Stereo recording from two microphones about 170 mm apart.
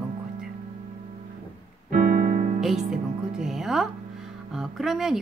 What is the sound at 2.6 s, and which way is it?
Music, 5° right (ahead or behind).